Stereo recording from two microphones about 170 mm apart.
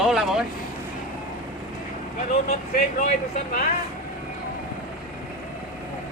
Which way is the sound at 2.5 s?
45° left (ahead or behind).